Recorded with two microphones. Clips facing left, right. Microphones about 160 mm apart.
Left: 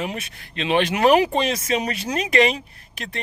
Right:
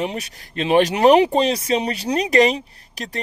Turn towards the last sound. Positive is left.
turn(degrees=-40)  # may be behind; listen again after turning